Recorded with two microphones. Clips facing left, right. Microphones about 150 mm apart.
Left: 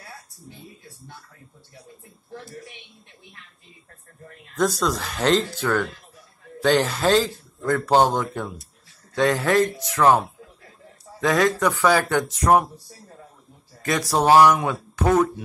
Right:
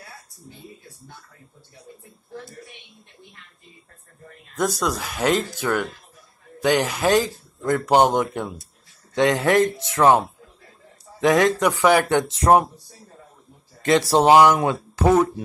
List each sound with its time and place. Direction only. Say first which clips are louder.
4.6 s a man's voice: left 1 dB; 15° right (ahead or behind)
13.8 s speech: right 3 dB; 25° right (ahead or behind)